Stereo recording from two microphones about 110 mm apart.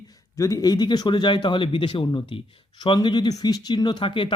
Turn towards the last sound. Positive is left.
turn(degrees=50)  # may be behind; listen again after turning